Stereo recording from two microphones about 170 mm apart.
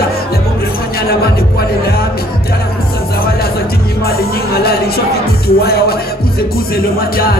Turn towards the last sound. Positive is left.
turn(degrees=65)  # may be behind; listen again after turning